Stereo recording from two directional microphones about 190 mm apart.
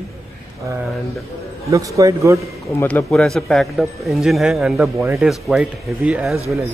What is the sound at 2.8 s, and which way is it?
Speech, 10° left (ahead or behind).